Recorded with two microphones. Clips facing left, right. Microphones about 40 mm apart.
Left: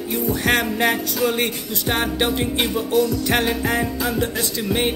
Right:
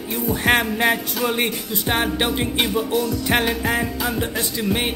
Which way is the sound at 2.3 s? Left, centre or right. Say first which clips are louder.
Even; right.